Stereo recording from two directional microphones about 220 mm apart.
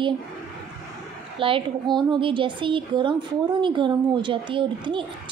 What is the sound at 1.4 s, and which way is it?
A woman's voice, 25° right (ahead or behind).